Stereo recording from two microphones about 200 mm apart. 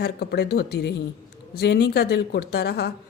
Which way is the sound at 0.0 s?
50° left (ahead or behind).